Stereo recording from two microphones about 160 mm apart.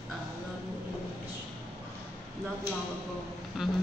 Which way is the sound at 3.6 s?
Centre (ahead or behind).